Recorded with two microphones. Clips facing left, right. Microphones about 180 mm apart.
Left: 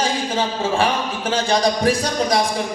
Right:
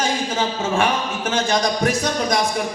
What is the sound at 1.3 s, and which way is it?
Speech, 30° left (ahead or behind).